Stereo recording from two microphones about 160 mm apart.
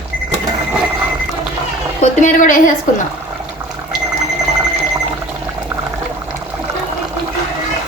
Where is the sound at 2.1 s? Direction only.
55° left (ahead or behind).